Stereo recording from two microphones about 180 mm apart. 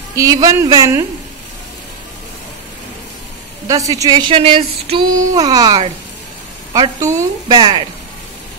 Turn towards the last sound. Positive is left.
turn(degrees=-25)  # may be behind; listen again after turning